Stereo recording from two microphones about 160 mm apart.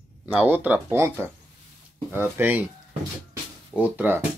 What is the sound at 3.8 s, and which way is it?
Speech, 10° right (ahead or behind).